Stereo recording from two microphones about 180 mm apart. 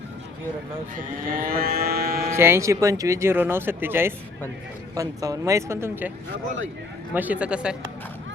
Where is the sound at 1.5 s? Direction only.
55° right (ahead or behind).